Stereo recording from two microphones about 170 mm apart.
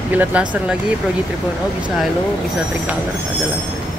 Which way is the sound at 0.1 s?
10° right (ahead or behind).